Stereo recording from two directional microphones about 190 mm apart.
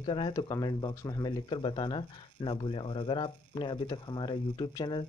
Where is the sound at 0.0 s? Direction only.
25° left (ahead or behind).